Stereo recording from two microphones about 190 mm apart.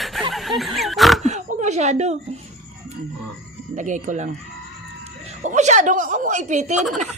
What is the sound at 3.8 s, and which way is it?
Speech, 40° right (ahead or behind).